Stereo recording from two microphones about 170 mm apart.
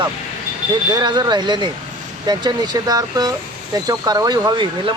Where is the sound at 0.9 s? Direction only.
25° right (ahead or behind).